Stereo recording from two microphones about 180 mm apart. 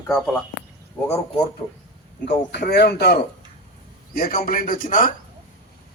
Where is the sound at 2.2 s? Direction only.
70° left (ahead or behind).